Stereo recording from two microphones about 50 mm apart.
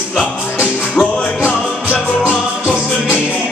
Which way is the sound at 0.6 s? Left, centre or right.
Left.